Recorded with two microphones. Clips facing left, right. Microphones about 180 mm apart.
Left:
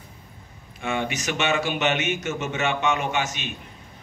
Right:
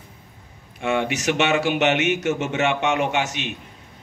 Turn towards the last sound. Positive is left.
turn(degrees=-70)  # may be behind; listen again after turning